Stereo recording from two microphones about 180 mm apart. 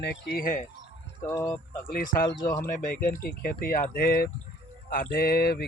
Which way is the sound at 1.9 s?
50° left (ahead or behind).